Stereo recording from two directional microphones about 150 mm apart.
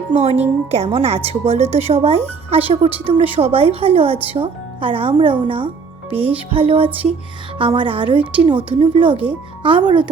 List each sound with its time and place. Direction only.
0.2 s speech: 45° right (ahead or behind)
6.1 s speech: 10° right (ahead or behind)
6.5 s speech: 40° right (ahead or behind)